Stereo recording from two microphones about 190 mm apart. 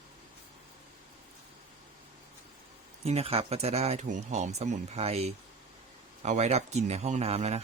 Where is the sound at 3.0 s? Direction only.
30° right (ahead or behind).